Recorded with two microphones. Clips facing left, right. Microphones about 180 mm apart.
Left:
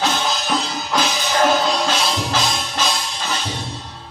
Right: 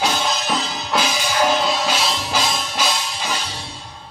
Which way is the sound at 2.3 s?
10° right (ahead or behind).